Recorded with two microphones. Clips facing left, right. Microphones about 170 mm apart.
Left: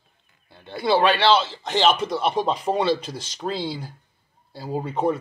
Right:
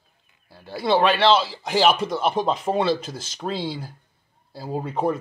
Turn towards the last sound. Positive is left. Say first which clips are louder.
# left 1 dB
turn(degrees=0)  # may be behind; listen again after turning